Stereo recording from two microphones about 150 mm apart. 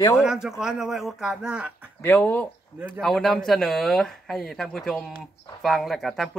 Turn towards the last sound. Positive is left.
turn(degrees=0)  # may be behind; listen again after turning